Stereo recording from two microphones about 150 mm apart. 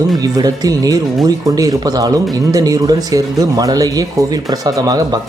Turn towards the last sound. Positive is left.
turn(degrees=-25)  # may be behind; listen again after turning